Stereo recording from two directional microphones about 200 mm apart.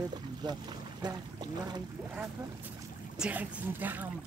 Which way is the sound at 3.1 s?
5° right (ahead or behind).